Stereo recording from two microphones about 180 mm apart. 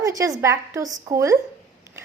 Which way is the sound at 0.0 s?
20° right (ahead or behind).